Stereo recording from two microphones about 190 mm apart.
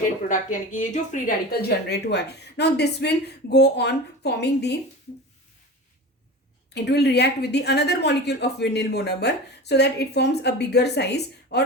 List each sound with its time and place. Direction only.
0.3 s a woman's voice: 40° left (ahead or behind); by 4.8 s 60° left (ahead or behind)
6.7 s a woman's voice: 60° left (ahead or behind)